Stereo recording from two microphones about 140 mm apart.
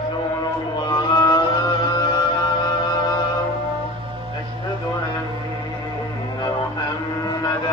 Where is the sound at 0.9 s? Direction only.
30° left (ahead or behind).